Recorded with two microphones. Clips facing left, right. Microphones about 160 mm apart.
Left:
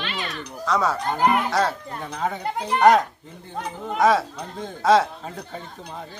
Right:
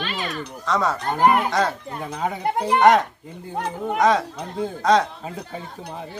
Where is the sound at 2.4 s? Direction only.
60° right (ahead or behind).